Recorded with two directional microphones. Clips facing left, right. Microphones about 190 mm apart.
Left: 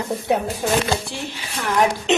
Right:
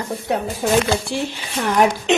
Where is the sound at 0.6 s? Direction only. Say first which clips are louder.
Right 4 dB; 5° right (ahead or behind).